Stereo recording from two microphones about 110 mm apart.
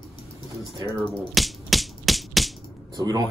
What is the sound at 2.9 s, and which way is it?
Speech, 35° right (ahead or behind).